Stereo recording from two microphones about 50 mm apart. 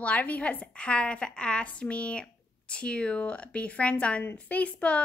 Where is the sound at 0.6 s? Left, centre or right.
Left.